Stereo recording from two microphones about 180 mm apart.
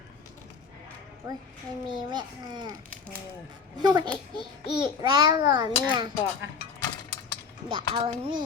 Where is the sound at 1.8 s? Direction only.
25° right (ahead or behind).